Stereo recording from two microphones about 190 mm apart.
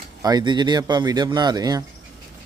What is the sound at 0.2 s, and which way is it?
A man's voice, 20° right (ahead or behind).